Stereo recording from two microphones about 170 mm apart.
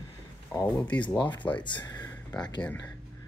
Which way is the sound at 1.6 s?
25° left (ahead or behind).